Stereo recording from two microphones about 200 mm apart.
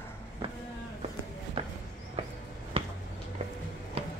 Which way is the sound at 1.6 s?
25° right (ahead or behind).